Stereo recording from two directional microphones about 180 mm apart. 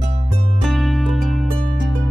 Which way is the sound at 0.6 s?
Centre (ahead or behind).